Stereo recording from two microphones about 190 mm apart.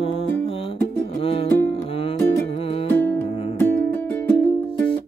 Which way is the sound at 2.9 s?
10° left (ahead or behind).